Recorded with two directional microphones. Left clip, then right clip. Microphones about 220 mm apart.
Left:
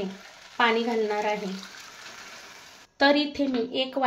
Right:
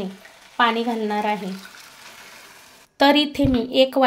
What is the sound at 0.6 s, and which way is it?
Speech, 35° right (ahead or behind).